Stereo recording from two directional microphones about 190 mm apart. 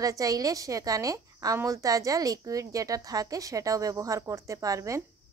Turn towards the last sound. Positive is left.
turn(degrees=-15)  # may be behind; listen again after turning